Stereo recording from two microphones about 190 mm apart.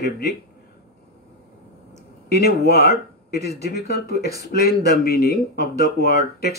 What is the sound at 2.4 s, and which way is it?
Speech, 60° left (ahead or behind).